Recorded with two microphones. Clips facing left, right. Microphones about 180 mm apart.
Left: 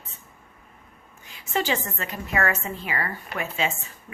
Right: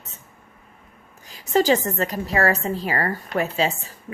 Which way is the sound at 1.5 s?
40° right (ahead or behind).